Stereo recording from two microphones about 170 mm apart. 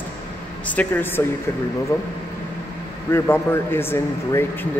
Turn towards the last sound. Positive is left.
turn(degrees=15)  # may be behind; listen again after turning